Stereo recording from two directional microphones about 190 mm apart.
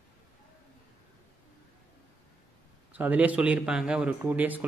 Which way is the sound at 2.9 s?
10° right (ahead or behind).